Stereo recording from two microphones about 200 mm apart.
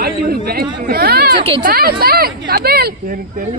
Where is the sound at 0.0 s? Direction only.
50° right (ahead or behind).